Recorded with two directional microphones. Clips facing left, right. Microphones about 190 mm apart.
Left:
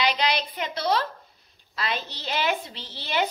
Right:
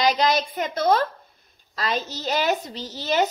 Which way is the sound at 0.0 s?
45° right (ahead or behind).